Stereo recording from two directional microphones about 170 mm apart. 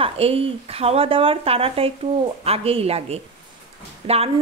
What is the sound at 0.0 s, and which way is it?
Speech, 35° right (ahead or behind).